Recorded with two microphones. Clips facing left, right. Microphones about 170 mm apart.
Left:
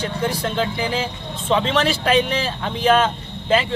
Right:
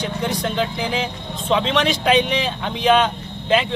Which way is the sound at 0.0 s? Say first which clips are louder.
Even; 5° left (ahead or behind).